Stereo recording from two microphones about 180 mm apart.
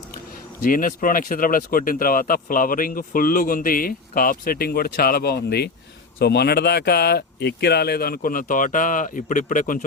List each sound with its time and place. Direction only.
0.6 s speech: 50° left (ahead or behind)